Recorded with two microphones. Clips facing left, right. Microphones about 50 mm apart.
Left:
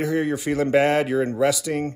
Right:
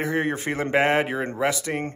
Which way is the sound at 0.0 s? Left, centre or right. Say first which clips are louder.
Left 2 dB; right.